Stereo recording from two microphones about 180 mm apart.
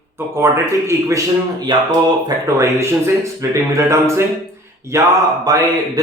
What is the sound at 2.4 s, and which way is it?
A man's voice, 15° right (ahead or behind).